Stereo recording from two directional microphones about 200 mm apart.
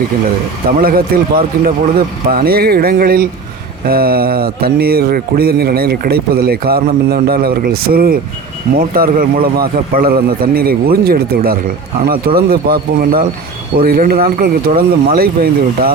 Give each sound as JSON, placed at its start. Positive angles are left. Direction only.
{"t": 0.8, "sound": "speech", "side_deg": -50}